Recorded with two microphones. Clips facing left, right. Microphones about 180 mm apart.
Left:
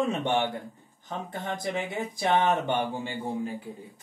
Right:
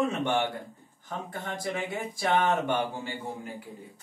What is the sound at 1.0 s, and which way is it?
Speech, 20° left (ahead or behind).